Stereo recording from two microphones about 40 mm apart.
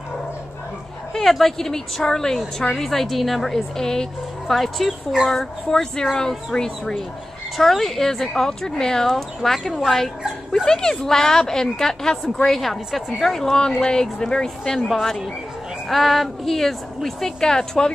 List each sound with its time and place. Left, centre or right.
1.1 s a woman's voice: centre
4.5 s a woman's voice: centre
7.5 s a woman's voice: centre
15.9 s a woman's voice: centre